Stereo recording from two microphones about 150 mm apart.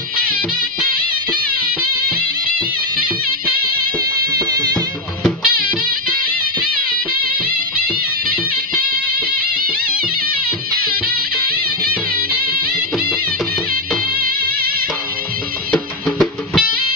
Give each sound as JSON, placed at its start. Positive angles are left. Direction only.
{"t": 4.3, "sound": "music", "side_deg": -25}
{"t": 5.5, "sound": "music", "side_deg": -75}
{"t": 15.7, "sound": "music", "side_deg": 5}